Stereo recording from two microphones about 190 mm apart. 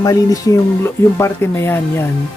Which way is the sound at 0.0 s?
20° left (ahead or behind).